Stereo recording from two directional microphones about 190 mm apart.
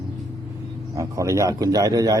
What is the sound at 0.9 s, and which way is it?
A man's voice, 15° right (ahead or behind).